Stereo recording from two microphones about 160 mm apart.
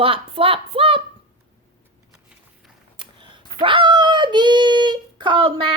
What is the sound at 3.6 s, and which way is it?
A woman's voice, 30° right (ahead or behind).